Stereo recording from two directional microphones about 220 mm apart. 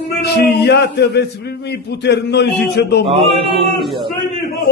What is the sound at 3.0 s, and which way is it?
Chant, 25° right (ahead or behind).